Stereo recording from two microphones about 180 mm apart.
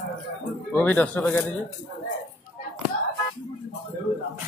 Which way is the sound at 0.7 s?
10° left (ahead or behind).